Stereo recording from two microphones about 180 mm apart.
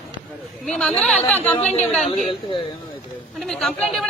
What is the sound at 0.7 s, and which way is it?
Speech, 5° left (ahead or behind).